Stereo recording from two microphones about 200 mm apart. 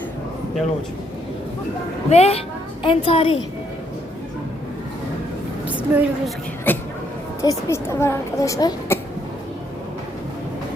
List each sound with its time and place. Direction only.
2.0 s a woman's voice: 30° left (ahead or behind)
5.6 s a woman's voice: 5° right (ahead or behind)
6.7 s a child's voice: 10° left (ahead or behind)